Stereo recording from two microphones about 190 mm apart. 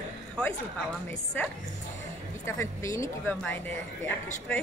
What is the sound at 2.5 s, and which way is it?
Speech, 15° left (ahead or behind).